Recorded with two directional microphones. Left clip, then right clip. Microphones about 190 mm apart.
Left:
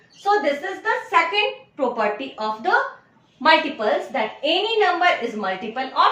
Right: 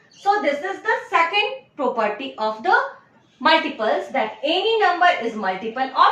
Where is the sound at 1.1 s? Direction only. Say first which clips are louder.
Even; 15° right (ahead or behind).